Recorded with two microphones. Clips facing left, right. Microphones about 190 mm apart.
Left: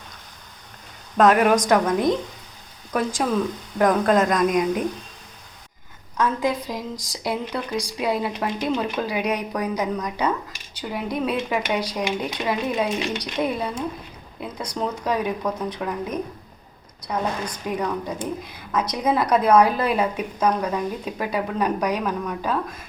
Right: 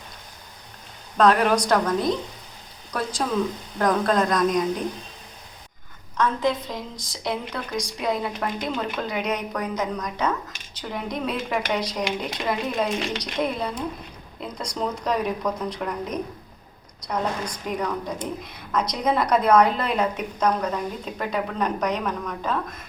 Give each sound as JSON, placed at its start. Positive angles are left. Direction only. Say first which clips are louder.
{"t": 1.2, "sound": "a woman's voice", "louder": "left 2 dB", "side_deg": 5}
{"t": 1.6, "sound": "a woman's voice", "louder": "left 3 dB", "side_deg": 15}
{"t": 3.8, "sound": "a woman's voice", "louder": "left 3 dB", "side_deg": 10}
{"t": 6.1, "sound": "a woman's voice", "louder": "even", "side_deg": 10}